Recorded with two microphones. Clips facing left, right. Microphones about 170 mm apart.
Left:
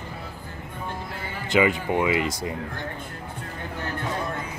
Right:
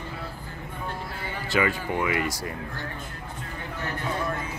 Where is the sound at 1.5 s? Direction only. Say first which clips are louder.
Left 4 dB; 20° left (ahead or behind).